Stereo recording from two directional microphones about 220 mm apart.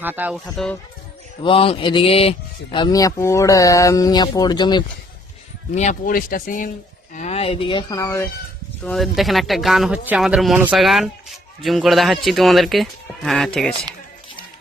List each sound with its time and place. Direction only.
0.0 s speech: 10° right (ahead or behind)
1.5 s speech: 25° left (ahead or behind)
5.7 s speech: 35° left (ahead or behind); by 8.2 s 15° left (ahead or behind)
8.8 s speech: centre (ahead or behind)